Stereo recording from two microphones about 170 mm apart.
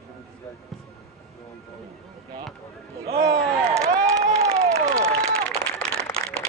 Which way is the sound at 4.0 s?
20° right (ahead or behind).